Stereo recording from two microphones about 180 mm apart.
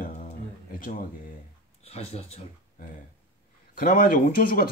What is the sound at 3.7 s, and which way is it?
Speech, 55° left (ahead or behind).